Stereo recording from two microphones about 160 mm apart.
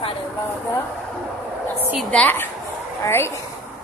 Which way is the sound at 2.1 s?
10° left (ahead or behind).